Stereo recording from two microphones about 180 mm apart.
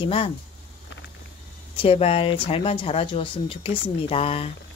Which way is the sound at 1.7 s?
30° left (ahead or behind).